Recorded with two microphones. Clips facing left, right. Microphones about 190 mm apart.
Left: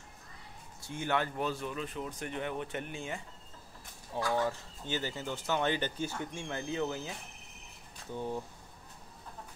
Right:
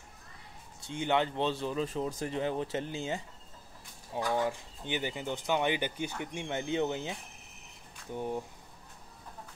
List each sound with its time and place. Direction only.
0.8 s speech: 20° right (ahead or behind)
4.1 s speech: 15° right (ahead or behind)